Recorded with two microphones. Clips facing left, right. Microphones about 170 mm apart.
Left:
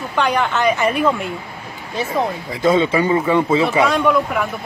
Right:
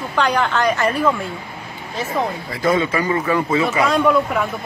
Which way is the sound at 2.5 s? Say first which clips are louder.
Left 4 dB; 25° left (ahead or behind).